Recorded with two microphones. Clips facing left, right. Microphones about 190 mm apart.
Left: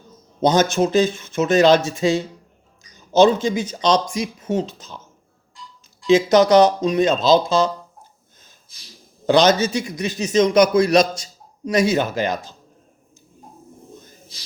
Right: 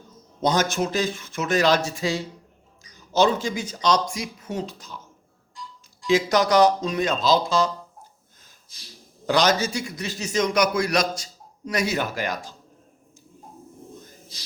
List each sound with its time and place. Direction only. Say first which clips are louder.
0.4 s a man's voice: left 6 dB; 20° left (ahead or behind)
6.1 s a man's voice: left 6 dB; 20° left (ahead or behind)
9.2 s a man's voice: left 6 dB; 25° left (ahead or behind)